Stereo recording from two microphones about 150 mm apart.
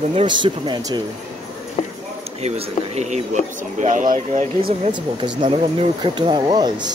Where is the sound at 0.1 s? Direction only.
35° right (ahead or behind).